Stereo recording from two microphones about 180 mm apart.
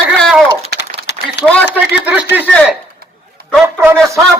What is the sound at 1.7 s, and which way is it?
Speech, 5° right (ahead or behind).